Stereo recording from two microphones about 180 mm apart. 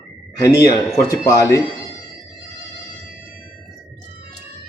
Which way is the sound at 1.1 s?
20° left (ahead or behind).